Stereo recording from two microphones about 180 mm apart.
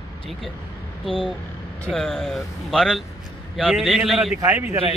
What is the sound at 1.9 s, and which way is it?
Speech, centre (ahead or behind).